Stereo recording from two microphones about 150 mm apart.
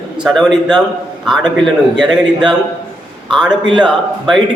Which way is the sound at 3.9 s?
Centre (ahead or behind).